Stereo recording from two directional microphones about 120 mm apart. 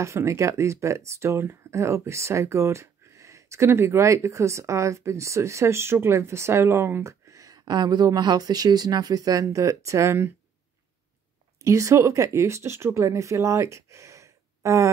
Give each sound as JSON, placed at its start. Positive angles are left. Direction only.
{"t": 0.0, "sound": "speech", "side_deg": -25}
{"t": 11.6, "sound": "speech", "side_deg": -25}